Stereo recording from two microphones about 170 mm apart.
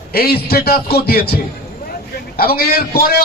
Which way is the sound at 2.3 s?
65° left (ahead or behind).